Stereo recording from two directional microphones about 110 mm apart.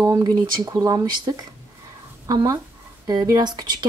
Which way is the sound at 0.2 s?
30° right (ahead or behind).